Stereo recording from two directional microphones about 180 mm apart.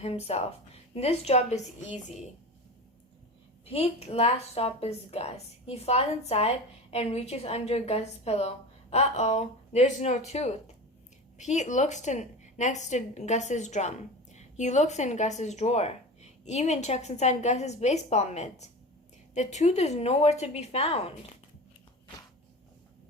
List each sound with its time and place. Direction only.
0.0 s a woman's voice: 35° left (ahead or behind)
3.7 s a woman's voice: 35° left (ahead or behind)